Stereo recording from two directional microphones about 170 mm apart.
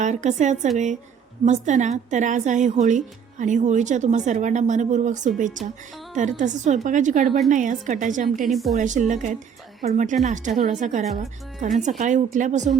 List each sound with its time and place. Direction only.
0.0 s a woman's voice: 45° right (ahead or behind)
8.4 s a woman's voice: centre (ahead or behind)
8.7 s a woman's voice: 45° right (ahead or behind)